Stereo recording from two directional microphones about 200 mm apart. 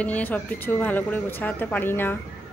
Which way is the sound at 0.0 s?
10° left (ahead or behind).